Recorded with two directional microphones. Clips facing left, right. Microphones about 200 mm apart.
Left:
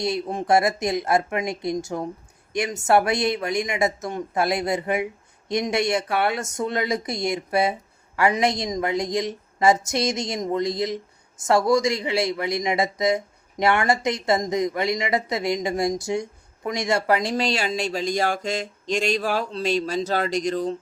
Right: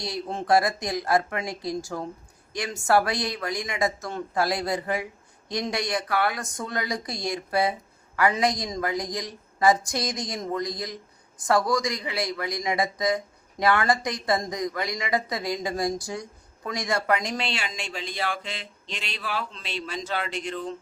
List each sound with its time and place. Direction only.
0.0 s speech: 20° left (ahead or behind); by 20.7 s 40° left (ahead or behind)